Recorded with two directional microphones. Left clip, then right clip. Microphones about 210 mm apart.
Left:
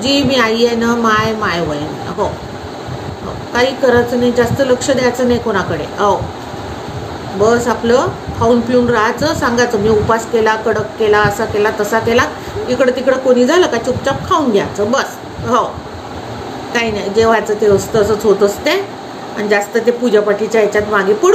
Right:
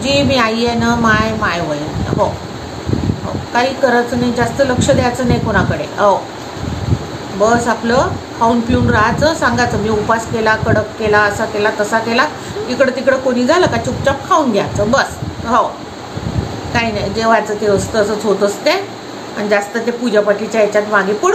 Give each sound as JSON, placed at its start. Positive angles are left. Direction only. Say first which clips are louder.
{"t": 0.0, "sound": "a woman's voice", "louder": "even", "side_deg": -10}
{"t": 3.5, "sound": "a woman's voice", "louder": "left 1 dB", "side_deg": -10}
{"t": 7.4, "sound": "a woman's voice", "louder": "left 1 dB", "side_deg": -10}
{"t": 16.7, "sound": "a woman's voice", "louder": "left 3 dB", "side_deg": -10}